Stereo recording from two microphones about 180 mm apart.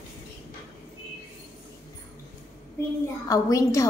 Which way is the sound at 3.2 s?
20° left (ahead or behind).